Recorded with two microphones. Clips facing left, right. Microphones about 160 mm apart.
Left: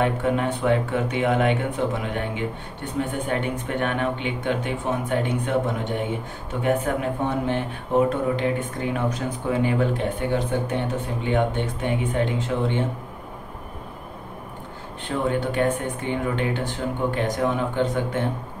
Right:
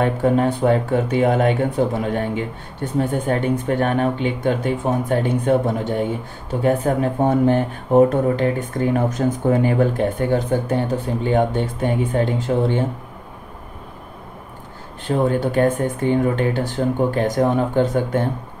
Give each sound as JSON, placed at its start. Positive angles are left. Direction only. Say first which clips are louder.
{"t": 0.0, "sound": "speech", "louder": "right 5 dB", "side_deg": -35}
{"t": 15.0, "sound": "speech", "louder": "right 5 dB", "side_deg": -40}